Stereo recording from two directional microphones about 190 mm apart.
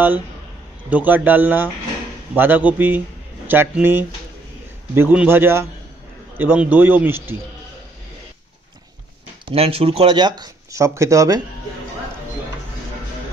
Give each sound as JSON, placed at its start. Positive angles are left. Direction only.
{"t": 0.8, "sound": "a man's voice", "side_deg": -10}
{"t": 9.5, "sound": "speech", "side_deg": -30}